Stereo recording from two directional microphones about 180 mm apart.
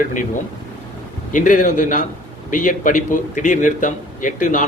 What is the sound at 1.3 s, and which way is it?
A man's voice, 45° left (ahead or behind).